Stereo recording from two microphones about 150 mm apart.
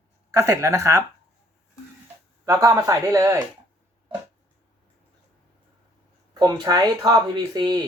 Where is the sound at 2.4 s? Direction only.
20° right (ahead or behind).